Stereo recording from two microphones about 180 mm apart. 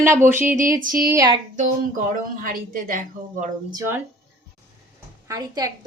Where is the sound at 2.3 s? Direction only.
50° right (ahead or behind).